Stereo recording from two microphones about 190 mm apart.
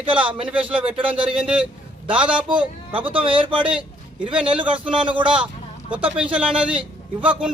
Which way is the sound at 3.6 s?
5° right (ahead or behind).